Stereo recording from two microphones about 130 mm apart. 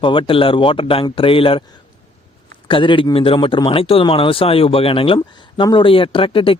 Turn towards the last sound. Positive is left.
turn(degrees=40)  # may be behind; listen again after turning